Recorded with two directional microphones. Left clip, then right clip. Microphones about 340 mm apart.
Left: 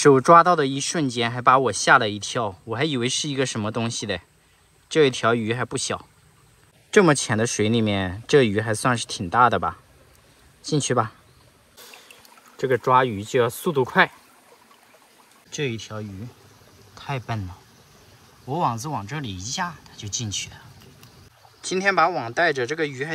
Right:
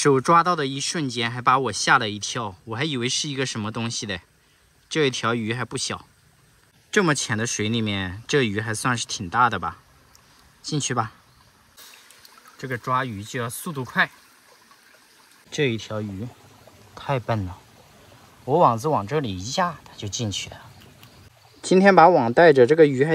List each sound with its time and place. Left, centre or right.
0.0 s speech: centre
13.4 s speech: centre
15.5 s speech: centre